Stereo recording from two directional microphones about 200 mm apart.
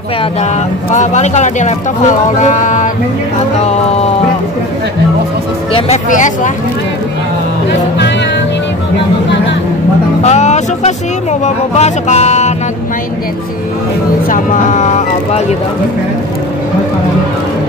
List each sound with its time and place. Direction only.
0.9 s speech: 35° left (ahead or behind)
5.7 s speech: 25° left (ahead or behind)
6.0 s speech: 40° left (ahead or behind)
10.2 s music: 35° left (ahead or behind)
11.4 s speech: 35° left (ahead or behind)
14.3 s speech: 40° left (ahead or behind)